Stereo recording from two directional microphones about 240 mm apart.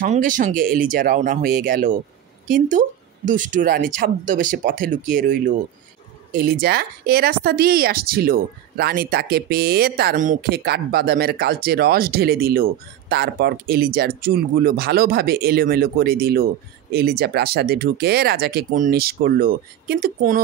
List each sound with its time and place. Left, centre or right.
0.0 s speech: right